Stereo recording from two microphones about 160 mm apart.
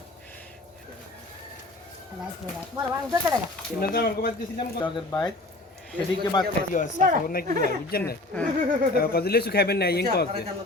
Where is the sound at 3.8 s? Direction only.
70° left (ahead or behind).